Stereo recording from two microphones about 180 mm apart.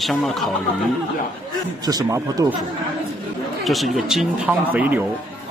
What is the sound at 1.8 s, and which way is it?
Speech, 20° right (ahead or behind).